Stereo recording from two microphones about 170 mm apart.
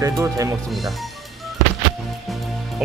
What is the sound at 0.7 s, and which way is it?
Speech, centre (ahead or behind).